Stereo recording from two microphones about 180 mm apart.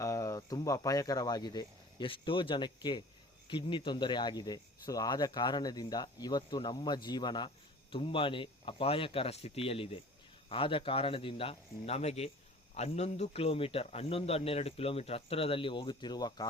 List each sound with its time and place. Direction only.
0.0 s a man's voice: 20° left (ahead or behind)